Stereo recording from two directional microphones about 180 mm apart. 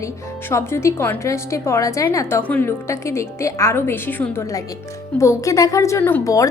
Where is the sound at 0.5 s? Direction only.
15° left (ahead or behind).